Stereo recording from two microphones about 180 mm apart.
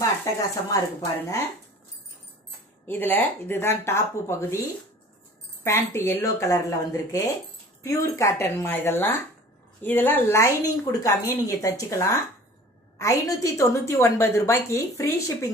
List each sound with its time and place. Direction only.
0.2 s speech: 20° left (ahead or behind)
2.9 s a woman's voice: 10° left (ahead or behind)
5.6 s a woman's voice: 15° left (ahead or behind)